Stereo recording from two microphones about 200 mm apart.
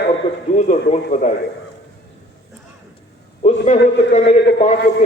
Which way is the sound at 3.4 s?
35° left (ahead or behind).